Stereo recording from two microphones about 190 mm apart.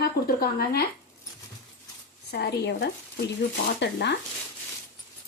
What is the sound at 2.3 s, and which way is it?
Speech, 60° left (ahead or behind).